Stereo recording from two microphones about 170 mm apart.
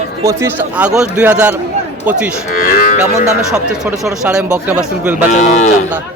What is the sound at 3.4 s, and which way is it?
Speech, 5° right (ahead or behind).